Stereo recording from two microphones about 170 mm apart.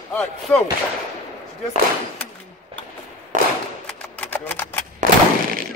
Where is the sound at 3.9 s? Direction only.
5° left (ahead or behind).